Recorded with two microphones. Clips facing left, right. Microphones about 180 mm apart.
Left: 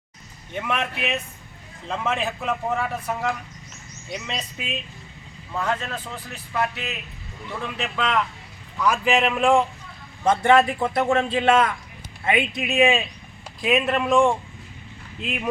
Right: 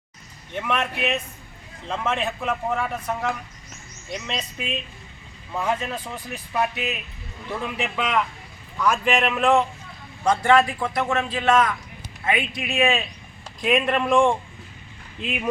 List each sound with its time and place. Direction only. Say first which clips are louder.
0.5 s a man's voice: right 1 dB; 5° left (ahead or behind)
5.5 s a man's voice: right 1 dB; 10° right (ahead or behind)
8.8 s a man's voice: left 1 dB; 5° left (ahead or behind)
10.2 s speech: left 1 dB; 25° left (ahead or behind)
13.6 s a man's voice: even; 5° left (ahead or behind)